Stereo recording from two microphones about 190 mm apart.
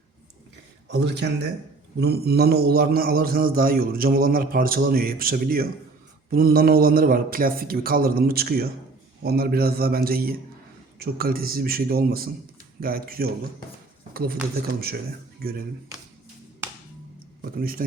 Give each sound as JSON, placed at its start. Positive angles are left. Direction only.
{"t": 0.9, "sound": "a man's voice", "side_deg": -65}
{"t": 17.4, "sound": "a man's voice", "side_deg": -50}